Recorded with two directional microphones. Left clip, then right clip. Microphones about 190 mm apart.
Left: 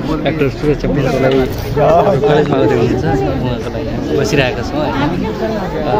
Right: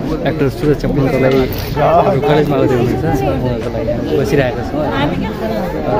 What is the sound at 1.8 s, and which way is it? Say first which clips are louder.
Speech: left 1 dB; 35° left (ahead or behind).